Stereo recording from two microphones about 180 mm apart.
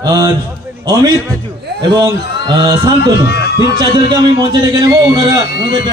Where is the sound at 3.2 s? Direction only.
70° left (ahead or behind).